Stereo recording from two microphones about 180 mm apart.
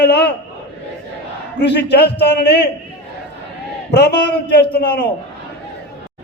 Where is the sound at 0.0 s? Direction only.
65° left (ahead or behind).